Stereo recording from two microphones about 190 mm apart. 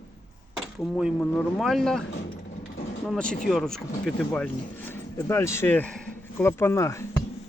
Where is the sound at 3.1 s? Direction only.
5° left (ahead or behind).